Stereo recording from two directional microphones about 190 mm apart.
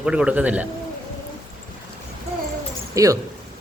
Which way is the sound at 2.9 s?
20° right (ahead or behind).